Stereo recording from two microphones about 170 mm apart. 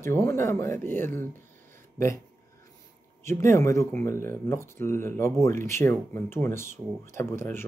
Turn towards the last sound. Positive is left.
turn(degrees=15)  # may be behind; listen again after turning